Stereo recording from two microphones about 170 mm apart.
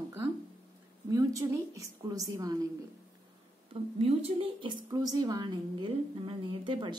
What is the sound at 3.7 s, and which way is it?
A woman's voice, 35° right (ahead or behind).